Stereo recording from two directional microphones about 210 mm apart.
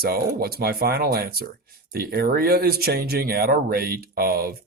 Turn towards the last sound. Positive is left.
turn(degrees=-45)  # may be behind; listen again after turning